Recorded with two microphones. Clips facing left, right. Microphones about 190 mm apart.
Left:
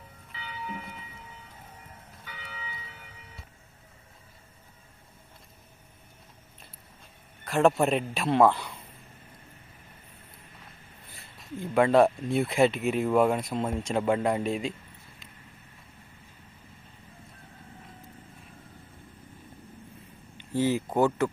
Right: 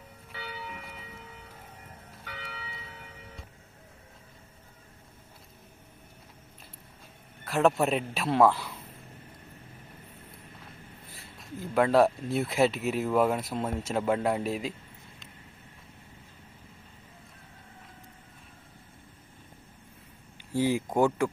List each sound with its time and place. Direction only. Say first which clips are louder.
0.3 s church bell: right 2 dB; 65° right (ahead or behind)
2.2 s church bell: right 4 dB; 65° right (ahead or behind)
7.4 s a man's voice: left 2 dB; centre (ahead or behind)
11.0 s a man's voice: right 2 dB; centre (ahead or behind)
20.4 s speech: left 1 dB; 10° right (ahead or behind)